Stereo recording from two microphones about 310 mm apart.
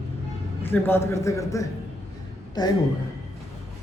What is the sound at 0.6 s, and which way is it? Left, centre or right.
A man's voice, centre.